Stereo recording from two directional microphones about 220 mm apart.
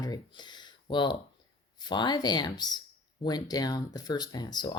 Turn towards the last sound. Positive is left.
turn(degrees=20)  # may be behind; listen again after turning